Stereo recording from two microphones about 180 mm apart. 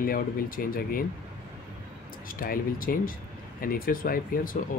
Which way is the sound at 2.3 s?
50° left (ahead or behind).